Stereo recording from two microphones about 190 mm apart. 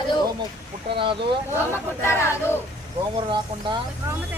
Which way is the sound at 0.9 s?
25° right (ahead or behind).